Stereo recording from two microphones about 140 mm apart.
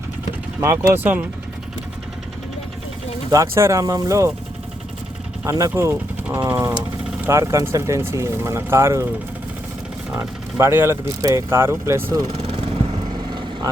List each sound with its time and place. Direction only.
0.6 s speech: 20° right (ahead or behind)
3.3 s speech: 20° right (ahead or behind)
5.5 s speech: 25° right (ahead or behind)
10.2 s speech: 15° right (ahead or behind)
12.3 s vehicle: 45° right (ahead or behind)